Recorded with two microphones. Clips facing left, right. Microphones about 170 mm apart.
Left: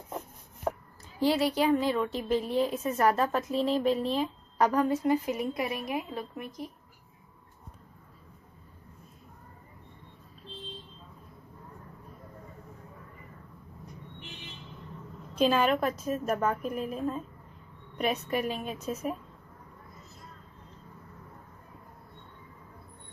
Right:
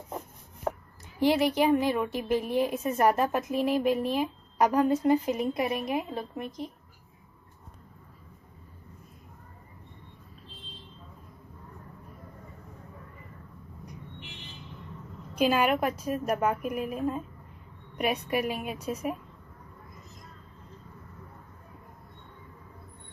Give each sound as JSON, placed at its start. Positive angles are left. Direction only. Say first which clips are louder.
{"t": 1.2, "sound": "a woman's voice", "louder": "right 2 dB", "side_deg": -15}
{"t": 15.3, "sound": "a woman's voice", "louder": "even", "side_deg": -10}